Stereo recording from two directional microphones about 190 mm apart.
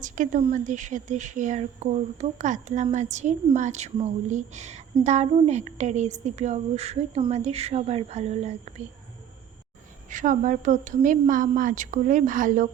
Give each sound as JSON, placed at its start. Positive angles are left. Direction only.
{"t": 0.0, "sound": "speech", "side_deg": -45}
{"t": 10.1, "sound": "a woman's voice", "side_deg": -40}